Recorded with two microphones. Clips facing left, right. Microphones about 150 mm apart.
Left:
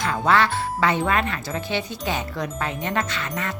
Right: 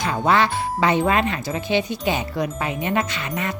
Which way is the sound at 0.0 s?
15° right (ahead or behind).